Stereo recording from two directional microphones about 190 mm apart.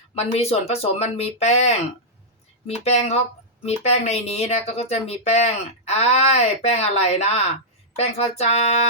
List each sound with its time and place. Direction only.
0.2 s speech: 35° left (ahead or behind)